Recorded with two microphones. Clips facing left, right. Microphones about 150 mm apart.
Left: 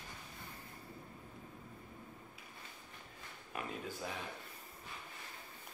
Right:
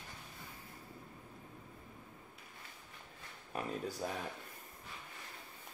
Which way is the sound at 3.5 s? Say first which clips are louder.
Right 4 dB; 40° right (ahead or behind).